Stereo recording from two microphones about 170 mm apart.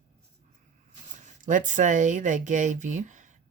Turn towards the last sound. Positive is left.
turn(degrees=-45)  # may be behind; listen again after turning